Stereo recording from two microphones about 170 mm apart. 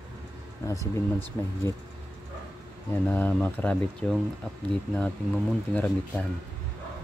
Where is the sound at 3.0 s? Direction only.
10° left (ahead or behind).